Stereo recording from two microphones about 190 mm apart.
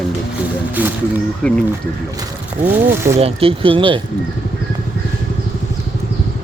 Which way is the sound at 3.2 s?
30° right (ahead or behind).